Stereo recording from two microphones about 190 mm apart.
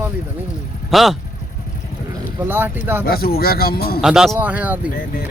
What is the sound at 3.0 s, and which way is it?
Speech, 50° left (ahead or behind).